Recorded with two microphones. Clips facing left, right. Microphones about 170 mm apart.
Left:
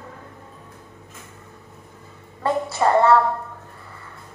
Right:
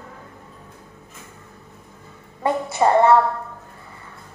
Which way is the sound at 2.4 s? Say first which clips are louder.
Right 1 dB; 20° right (ahead or behind).